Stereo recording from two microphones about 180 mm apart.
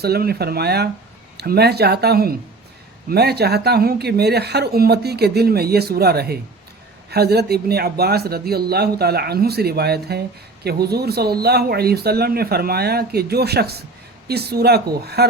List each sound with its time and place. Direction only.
0.0 s speech: 60° right (ahead or behind)